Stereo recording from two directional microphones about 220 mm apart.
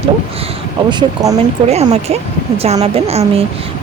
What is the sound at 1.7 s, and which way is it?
Speech, 30° right (ahead or behind).